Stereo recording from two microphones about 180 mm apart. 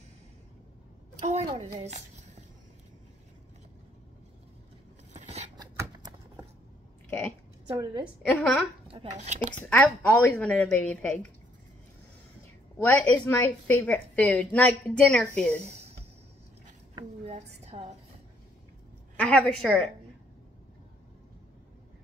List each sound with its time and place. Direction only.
1.2 s a woman's voice: 40° right (ahead or behind)
5.2 s scissors: 35° right (ahead or behind)
5.6 s a sound: 20° right (ahead or behind)
7.1 s a woman's voice: 5° left (ahead or behind)
7.7 s a woman's voice: 25° right (ahead or behind)
8.3 s a woman's voice: 10° left (ahead or behind)
8.8 s speech: 35° right (ahead or behind)
9.7 s a woman's voice: 10° left (ahead or behind)
12.7 s a woman's voice: 10° left (ahead or behind)
16.9 s a sound: 35° right (ahead or behind)
17.6 s a woman's voice: 35° right (ahead or behind)
19.1 s a woman's voice: 5° left (ahead or behind)